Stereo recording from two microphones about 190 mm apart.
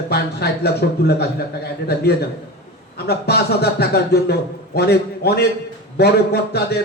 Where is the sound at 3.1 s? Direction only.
60° left (ahead or behind).